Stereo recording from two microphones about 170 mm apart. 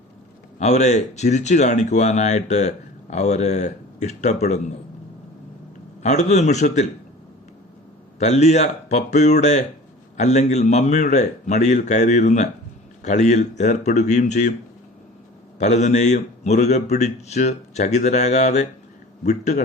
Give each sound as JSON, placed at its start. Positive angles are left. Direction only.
{"t": 0.6, "sound": "speech", "side_deg": 40}
{"t": 6.0, "sound": "speech", "side_deg": 40}
{"t": 8.2, "sound": "speech", "side_deg": 40}
{"t": 15.5, "sound": "speech", "side_deg": 45}